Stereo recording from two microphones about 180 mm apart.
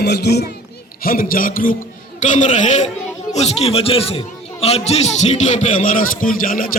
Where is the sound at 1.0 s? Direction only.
55° left (ahead or behind).